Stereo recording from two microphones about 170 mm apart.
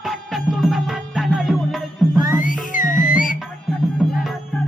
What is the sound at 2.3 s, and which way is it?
Music, 50° left (ahead or behind).